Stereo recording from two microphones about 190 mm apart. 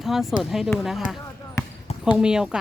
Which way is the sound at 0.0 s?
Centre (ahead or behind).